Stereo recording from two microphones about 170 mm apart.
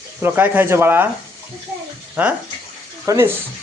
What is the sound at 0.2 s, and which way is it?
Speech, 10° right (ahead or behind).